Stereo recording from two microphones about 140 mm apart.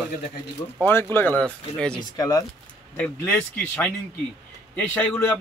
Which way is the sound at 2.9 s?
10° left (ahead or behind).